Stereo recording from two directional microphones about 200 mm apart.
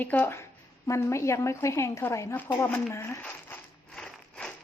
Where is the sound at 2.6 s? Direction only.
10° left (ahead or behind).